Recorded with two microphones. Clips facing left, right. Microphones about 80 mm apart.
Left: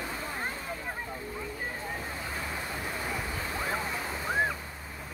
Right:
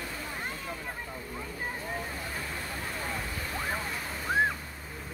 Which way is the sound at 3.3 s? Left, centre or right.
Centre.